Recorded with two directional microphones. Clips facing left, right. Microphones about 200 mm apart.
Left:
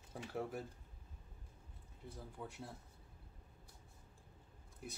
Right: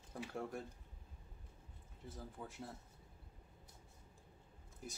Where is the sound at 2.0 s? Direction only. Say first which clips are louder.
Even; centre (ahead or behind).